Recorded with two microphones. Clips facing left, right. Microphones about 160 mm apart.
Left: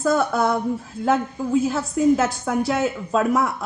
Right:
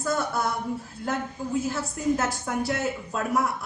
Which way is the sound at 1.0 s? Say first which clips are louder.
Left 9 dB; 90° left.